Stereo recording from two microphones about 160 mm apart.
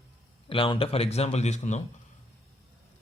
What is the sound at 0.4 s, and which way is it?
A man's voice, 35° left (ahead or behind).